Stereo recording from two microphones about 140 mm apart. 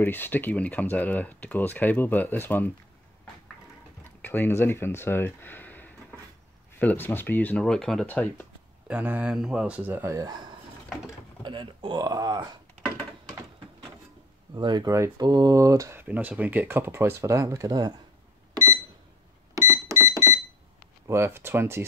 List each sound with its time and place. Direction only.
0.0 s speech: 15° left (ahead or behind)
4.0 s speech: 15° left (ahead or behind)
8.8 s speech: 10° right (ahead or behind); by 12.4 s 30° right (ahead or behind)
14.5 s speech: 30° right (ahead or behind)
18.5 s a sound: 20° right (ahead or behind)
21.1 s speech: 20° right (ahead or behind)